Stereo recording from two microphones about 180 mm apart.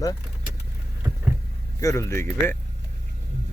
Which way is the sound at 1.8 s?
15° left (ahead or behind).